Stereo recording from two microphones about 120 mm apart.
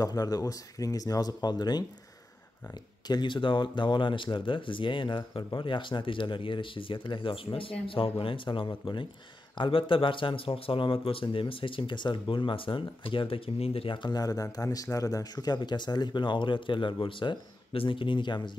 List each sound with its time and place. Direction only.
0.0 s speech: 30° left (ahead or behind)
3.1 s speech: 40° left (ahead or behind)